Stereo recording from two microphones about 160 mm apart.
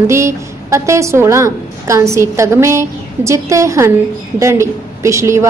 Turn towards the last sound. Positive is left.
turn(degrees=-20)  # may be behind; listen again after turning